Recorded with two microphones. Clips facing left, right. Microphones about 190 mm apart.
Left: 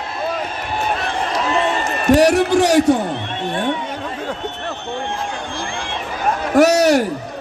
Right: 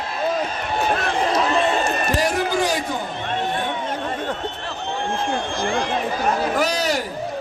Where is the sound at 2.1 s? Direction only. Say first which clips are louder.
Left 11 dB; 70° left (ahead or behind).